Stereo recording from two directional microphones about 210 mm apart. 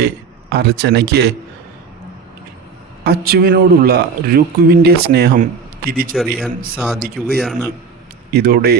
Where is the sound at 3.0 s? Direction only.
50° right (ahead or behind).